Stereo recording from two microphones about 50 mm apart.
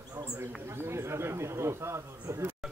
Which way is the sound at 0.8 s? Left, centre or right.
Right.